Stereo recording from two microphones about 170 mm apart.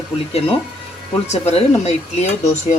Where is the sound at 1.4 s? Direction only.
40° left (ahead or behind).